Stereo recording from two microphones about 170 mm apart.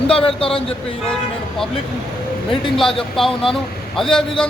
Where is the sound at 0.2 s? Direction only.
35° left (ahead or behind).